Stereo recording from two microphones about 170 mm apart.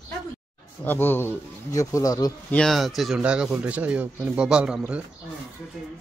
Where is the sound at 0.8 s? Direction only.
10° left (ahead or behind).